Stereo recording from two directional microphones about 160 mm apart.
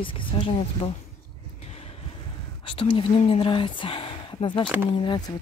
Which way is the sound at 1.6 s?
40° left (ahead or behind).